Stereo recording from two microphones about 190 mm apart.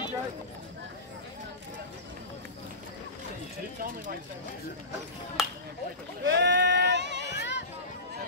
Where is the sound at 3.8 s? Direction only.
50° right (ahead or behind).